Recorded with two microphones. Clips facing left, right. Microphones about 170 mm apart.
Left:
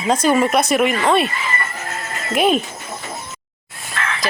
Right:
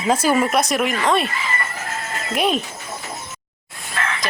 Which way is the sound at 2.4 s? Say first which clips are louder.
Left 4 dB; centre (ahead or behind).